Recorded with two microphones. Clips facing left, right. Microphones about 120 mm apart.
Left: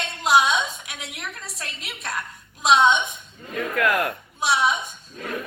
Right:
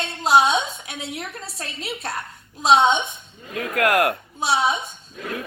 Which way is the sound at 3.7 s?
70° right (ahead or behind).